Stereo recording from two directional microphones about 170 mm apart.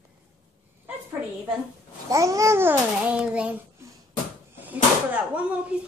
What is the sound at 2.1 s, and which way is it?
Babbling, 20° right (ahead or behind).